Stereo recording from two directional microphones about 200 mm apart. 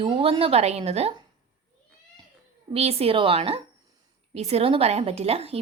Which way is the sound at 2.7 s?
30° right (ahead or behind).